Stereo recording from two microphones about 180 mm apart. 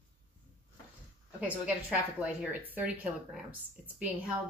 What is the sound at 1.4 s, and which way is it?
Speech, 10° right (ahead or behind).